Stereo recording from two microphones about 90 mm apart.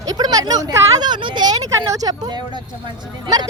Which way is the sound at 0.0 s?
45° right (ahead or behind).